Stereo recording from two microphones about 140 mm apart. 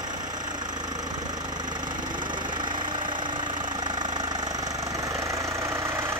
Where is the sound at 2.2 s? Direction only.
35° right (ahead or behind).